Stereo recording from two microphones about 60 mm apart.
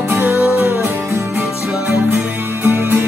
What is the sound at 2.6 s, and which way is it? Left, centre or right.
Music, right.